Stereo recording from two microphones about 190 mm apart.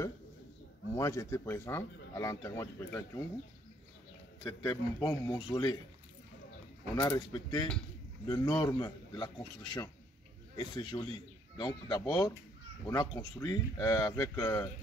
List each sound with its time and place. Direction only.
0.9 s speech: 15° left (ahead or behind)
4.5 s speech: 15° left (ahead or behind)
7.0 s speech: 20° left (ahead or behind)